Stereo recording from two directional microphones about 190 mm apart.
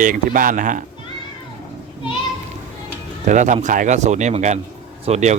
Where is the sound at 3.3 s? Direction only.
40° right (ahead or behind).